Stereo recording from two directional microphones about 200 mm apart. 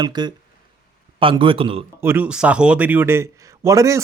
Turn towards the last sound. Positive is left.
turn(degrees=-15)  # may be behind; listen again after turning